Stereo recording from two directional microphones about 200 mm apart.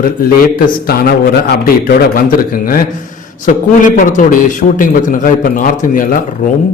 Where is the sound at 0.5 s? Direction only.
50° left (ahead or behind).